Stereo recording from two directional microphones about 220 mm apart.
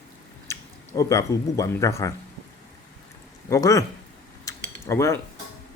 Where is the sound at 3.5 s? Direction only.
15° left (ahead or behind).